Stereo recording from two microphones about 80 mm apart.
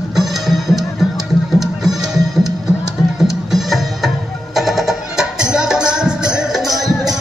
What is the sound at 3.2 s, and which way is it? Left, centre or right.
Music, centre.